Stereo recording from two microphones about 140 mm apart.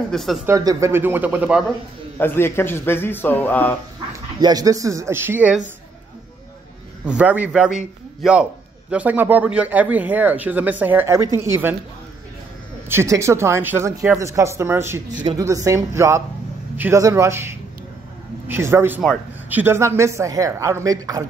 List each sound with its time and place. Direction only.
0.1 s speech: centre (ahead or behind)
0.5 s speech: 25° right (ahead or behind)
2.1 s a man's voice: 15° left (ahead or behind)
4.4 s speech: 30° right (ahead or behind)
7.1 s speech: 10° right (ahead or behind)
12.8 s speech: 20° right (ahead or behind)